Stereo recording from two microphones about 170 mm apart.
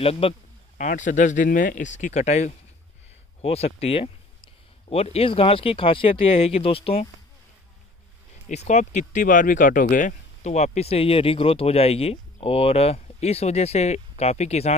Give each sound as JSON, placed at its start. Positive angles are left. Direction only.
{"t": 0.0, "sound": "speech", "side_deg": 35}
{"t": 0.7, "sound": "speech", "side_deg": 50}
{"t": 8.6, "sound": "speech", "side_deg": 45}